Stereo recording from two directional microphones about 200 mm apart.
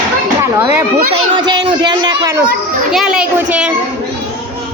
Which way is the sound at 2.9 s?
5° right (ahead or behind).